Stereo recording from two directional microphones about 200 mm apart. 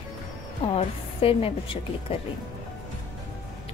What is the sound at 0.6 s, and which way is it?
A woman's voice, 30° left (ahead or behind).